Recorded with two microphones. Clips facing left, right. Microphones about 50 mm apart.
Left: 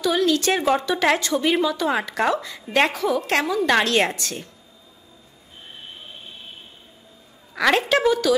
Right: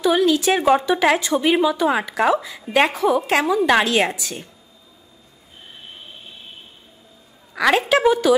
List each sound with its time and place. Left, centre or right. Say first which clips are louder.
0.0 s a woman's voice: right 3 dB; centre
3.0 s a woman's voice: right 3 dB; centre
7.5 s a woman's voice: right 2 dB; centre
8.0 s speech: right 3 dB; centre